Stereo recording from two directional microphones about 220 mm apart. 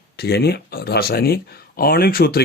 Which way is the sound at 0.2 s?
45° left (ahead or behind).